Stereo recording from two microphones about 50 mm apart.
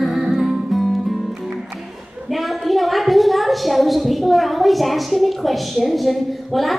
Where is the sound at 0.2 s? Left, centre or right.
Centre.